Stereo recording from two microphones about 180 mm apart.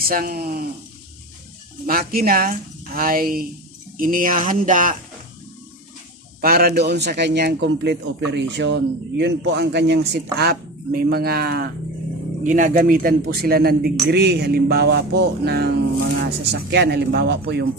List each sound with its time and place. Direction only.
0.1 s a man's voice: 55° right (ahead or behind)
1.9 s speech: 55° right (ahead or behind)
6.4 s a man's voice: 60° right (ahead or behind)
12.4 s a man's voice: 45° right (ahead or behind); by 17.7 s 65° right (ahead or behind)